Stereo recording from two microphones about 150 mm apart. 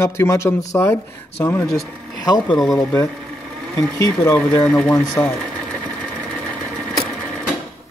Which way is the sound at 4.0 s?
20° left (ahead or behind).